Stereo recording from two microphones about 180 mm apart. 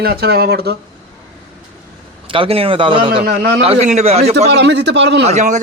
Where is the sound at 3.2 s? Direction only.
60° right (ahead or behind).